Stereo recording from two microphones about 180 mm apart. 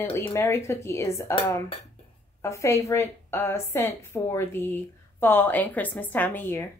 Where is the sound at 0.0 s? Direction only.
15° left (ahead or behind).